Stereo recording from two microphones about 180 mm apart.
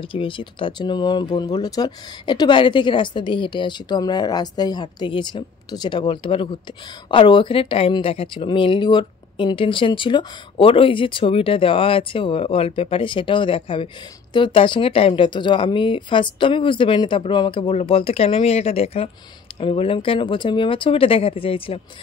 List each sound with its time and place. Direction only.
0.0 s speech: 30° left (ahead or behind)